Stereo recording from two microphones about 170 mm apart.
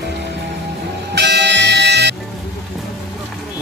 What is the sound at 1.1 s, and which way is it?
Music, 90° right.